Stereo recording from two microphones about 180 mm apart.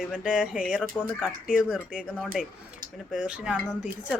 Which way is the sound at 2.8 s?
50° right (ahead or behind).